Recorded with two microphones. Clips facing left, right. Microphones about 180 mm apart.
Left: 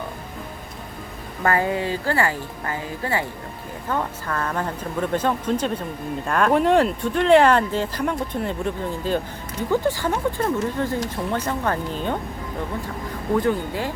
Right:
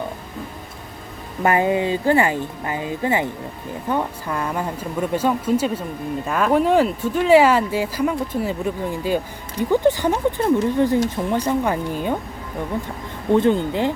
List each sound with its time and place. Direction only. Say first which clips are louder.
1.4 s speech: right 4 dB; 20° right (ahead or behind)
13.3 s speech: right 5 dB; 25° right (ahead or behind)